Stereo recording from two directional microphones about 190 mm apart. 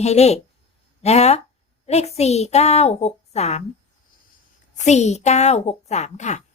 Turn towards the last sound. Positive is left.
turn(degrees=40)  # may be behind; listen again after turning